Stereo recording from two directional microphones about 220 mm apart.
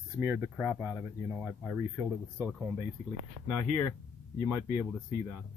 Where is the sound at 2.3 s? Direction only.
10° right (ahead or behind).